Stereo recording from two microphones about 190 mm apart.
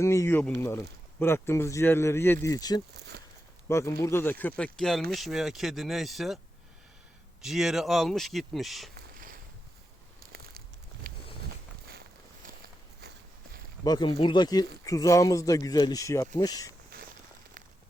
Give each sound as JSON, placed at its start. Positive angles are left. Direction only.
{"t": 0.0, "sound": "speech", "side_deg": 15}
{"t": 3.1, "sound": "a sound", "side_deg": -55}
{"t": 3.7, "sound": "speech", "side_deg": 15}
{"t": 7.4, "sound": "speech", "side_deg": 0}
{"t": 11.1, "sound": "walk", "side_deg": -50}
{"t": 13.8, "sound": "speech", "side_deg": 25}